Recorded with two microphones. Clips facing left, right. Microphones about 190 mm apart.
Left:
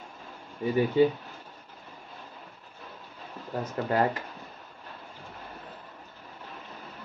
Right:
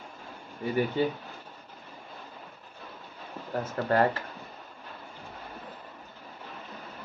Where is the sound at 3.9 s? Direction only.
20° left (ahead or behind).